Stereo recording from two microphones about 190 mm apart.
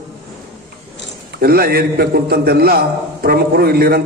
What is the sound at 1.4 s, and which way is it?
A man's voice, 55° right (ahead or behind).